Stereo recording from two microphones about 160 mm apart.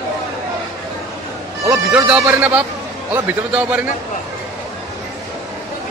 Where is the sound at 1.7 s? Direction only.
20° right (ahead or behind).